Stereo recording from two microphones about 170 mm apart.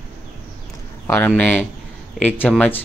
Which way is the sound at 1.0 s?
10° left (ahead or behind).